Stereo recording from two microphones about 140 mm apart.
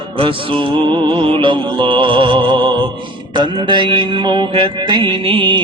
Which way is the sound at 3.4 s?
35° right (ahead or behind).